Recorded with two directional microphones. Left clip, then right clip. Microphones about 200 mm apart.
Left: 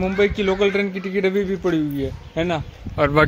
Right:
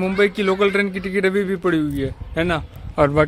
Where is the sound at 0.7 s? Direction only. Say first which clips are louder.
Right 2 dB; 35° right (ahead or behind).